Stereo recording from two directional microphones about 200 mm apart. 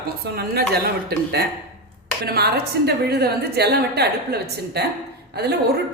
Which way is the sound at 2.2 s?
55° right (ahead or behind).